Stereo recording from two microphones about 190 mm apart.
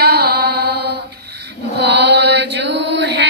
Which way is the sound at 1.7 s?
65° right (ahead or behind).